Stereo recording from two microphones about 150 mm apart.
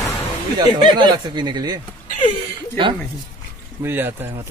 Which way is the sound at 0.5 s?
30° right (ahead or behind).